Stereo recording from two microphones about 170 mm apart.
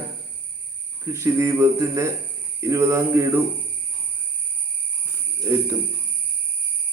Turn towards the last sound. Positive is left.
turn(degrees=-15)  # may be behind; listen again after turning